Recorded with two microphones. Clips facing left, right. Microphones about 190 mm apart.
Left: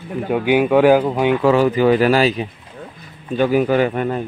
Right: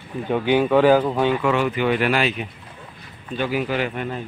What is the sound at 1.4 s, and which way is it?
Speech, 35° left (ahead or behind).